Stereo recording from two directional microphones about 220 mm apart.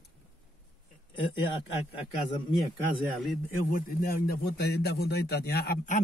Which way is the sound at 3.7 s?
40° left (ahead or behind).